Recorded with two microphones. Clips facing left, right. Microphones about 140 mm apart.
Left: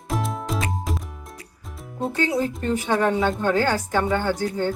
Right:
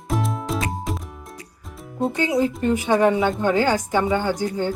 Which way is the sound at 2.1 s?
15° right (ahead or behind).